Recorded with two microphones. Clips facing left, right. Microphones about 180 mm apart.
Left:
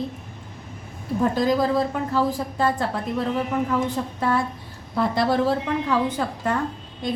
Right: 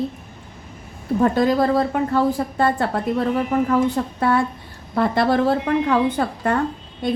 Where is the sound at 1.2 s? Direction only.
60° right (ahead or behind).